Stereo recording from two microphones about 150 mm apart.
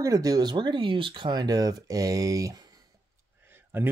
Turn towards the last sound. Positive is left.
turn(degrees=-15)  # may be behind; listen again after turning